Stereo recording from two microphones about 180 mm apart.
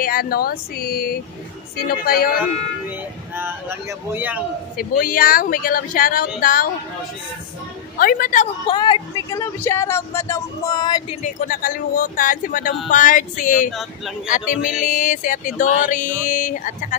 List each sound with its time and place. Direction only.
0.0 s speech: 55° left (ahead or behind)
3.3 s speech: 10° right (ahead or behind)
4.7 s speech: 55° left (ahead or behind)
8.0 s speech: 50° left (ahead or behind)
8.6 s speech: 25° left (ahead or behind)
9.4 s speech: 15° left (ahead or behind)
11.2 s speech: 50° left (ahead or behind)
13.7 s speech: centre (ahead or behind)
14.9 s speech: 45° left (ahead or behind)